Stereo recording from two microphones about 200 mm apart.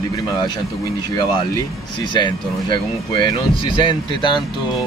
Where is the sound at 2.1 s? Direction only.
25° left (ahead or behind).